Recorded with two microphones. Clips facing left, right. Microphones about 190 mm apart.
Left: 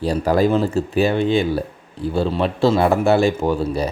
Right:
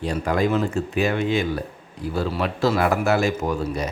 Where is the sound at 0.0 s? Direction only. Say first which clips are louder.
Left 5 dB; 35° left (ahead or behind).